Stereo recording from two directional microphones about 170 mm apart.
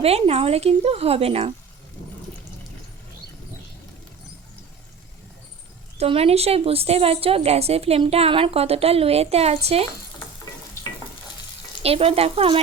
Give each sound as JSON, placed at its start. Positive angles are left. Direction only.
{"t": 0.0, "sound": "a woman's voice", "side_deg": -35}
{"t": 6.0, "sound": "a woman's voice", "side_deg": -35}
{"t": 11.8, "sound": "a woman's voice", "side_deg": -35}